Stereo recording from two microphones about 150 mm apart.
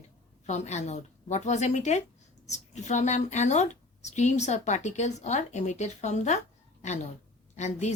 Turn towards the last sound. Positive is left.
turn(degrees=50)  # may be behind; listen again after turning